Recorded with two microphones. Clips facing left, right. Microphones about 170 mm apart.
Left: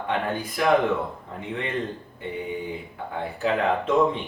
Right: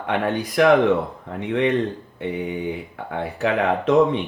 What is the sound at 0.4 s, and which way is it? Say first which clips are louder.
Speech: right 6 dB; 75° right (ahead or behind).